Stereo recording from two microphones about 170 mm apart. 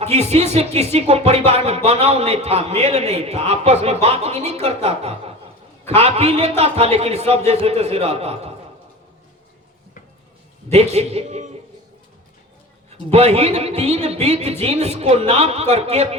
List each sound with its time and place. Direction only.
0.0 s speech: 40° right (ahead or behind)
10.9 s speech: 40° right (ahead or behind)
13.1 s speech: 40° right (ahead or behind)